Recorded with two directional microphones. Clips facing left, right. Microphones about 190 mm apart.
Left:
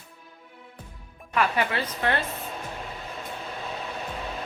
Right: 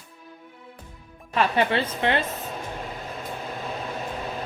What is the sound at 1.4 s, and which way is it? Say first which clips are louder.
Speech: right 3 dB; 25° right (ahead or behind).